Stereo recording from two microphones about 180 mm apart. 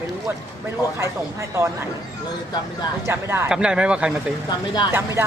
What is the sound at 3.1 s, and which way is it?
Speech, 15° right (ahead or behind).